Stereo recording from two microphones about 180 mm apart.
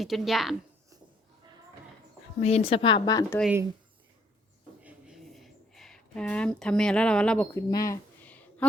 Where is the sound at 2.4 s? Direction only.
35° left (ahead or behind); by 3.4 s 20° left (ahead or behind).